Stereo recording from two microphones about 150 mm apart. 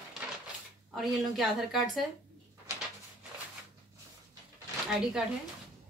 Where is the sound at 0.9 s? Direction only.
Centre (ahead or behind).